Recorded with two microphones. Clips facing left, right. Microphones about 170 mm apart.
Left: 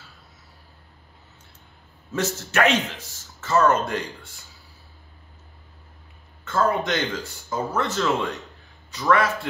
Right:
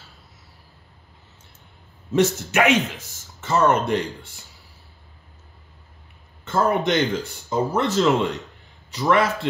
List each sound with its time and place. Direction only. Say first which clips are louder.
2.1 s a man's voice: right 5 dB; 15° right (ahead or behind)
6.4 s a man's voice: right 2 dB; 20° right (ahead or behind)